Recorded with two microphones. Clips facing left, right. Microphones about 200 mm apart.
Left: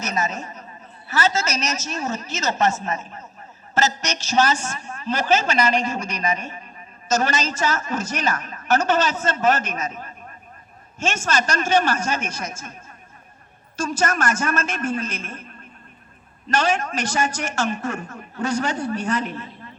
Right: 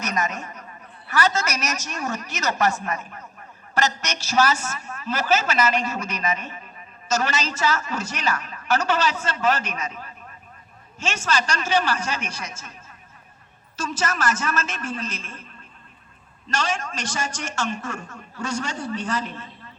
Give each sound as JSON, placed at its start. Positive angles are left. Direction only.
{"t": 0.1, "sound": "a woman's voice", "side_deg": 25}
{"t": 4.4, "sound": "a man's voice", "side_deg": 25}
{"t": 13.8, "sound": "a woman's voice", "side_deg": 50}